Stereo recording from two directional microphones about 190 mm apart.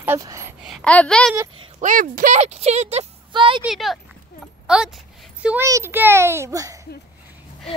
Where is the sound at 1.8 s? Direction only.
45° right (ahead or behind); by 3.6 s 25° right (ahead or behind).